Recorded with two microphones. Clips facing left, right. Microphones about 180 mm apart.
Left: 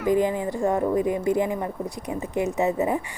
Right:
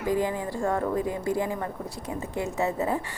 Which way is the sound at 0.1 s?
20° left (ahead or behind).